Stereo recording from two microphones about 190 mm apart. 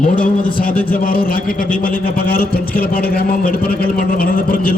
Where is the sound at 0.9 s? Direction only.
50° left (ahead or behind).